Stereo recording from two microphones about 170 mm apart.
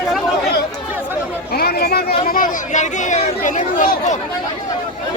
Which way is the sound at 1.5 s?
65° left (ahead or behind).